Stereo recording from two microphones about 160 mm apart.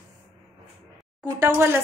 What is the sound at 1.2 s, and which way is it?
Speech, 15° right (ahead or behind).